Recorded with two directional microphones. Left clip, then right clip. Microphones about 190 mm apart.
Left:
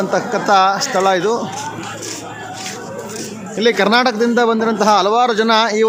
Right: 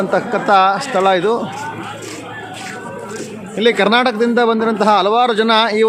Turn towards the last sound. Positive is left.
turn(degrees=0)  # may be behind; listen again after turning